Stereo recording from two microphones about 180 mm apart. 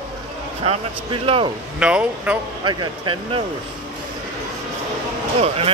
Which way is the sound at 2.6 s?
25° right (ahead or behind).